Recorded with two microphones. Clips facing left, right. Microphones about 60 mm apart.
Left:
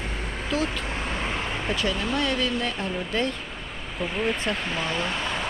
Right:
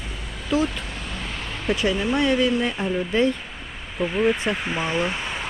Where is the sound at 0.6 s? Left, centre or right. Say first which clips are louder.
Right 1 dB; left.